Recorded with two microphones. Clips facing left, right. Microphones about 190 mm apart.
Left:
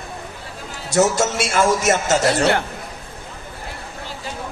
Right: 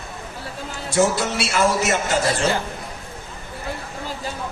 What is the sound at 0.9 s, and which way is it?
A man's voice, 45° left (ahead or behind).